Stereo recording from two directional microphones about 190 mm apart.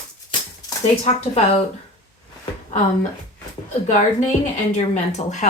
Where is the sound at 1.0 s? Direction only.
35° left (ahead or behind).